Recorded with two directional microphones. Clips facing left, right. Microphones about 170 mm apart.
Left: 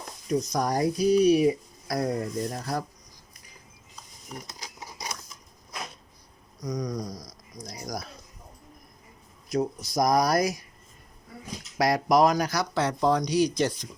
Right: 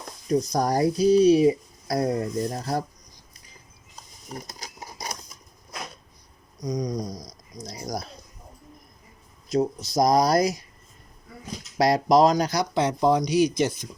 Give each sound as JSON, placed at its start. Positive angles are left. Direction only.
{"t": 0.3, "sound": "speech", "side_deg": -35}
{"t": 4.3, "sound": "a sound", "side_deg": -40}
{"t": 6.6, "sound": "speech", "side_deg": -20}
{"t": 9.5, "sound": "speech", "side_deg": -25}
{"t": 11.8, "sound": "speech", "side_deg": -25}